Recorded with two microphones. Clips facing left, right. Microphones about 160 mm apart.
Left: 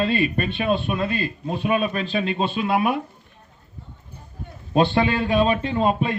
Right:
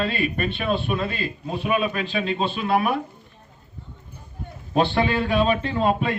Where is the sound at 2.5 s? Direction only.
20° left (ahead or behind).